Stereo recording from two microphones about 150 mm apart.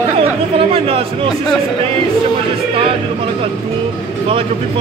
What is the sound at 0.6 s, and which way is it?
Speech, 40° right (ahead or behind).